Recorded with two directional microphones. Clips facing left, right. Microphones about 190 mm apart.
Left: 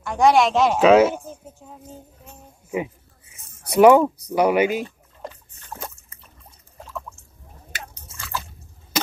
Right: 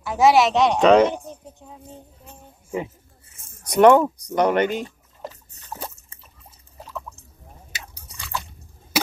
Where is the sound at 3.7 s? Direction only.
5° left (ahead or behind).